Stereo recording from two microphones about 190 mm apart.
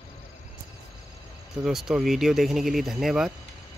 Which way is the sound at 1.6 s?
Centre (ahead or behind).